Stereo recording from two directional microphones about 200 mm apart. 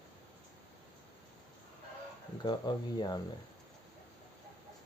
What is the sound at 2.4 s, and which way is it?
Speech, 20° left (ahead or behind).